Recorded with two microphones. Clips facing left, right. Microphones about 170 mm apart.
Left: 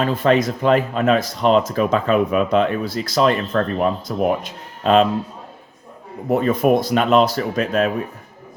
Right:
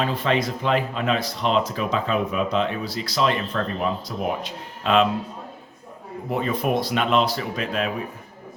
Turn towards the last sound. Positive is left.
turn(degrees=45)  # may be behind; listen again after turning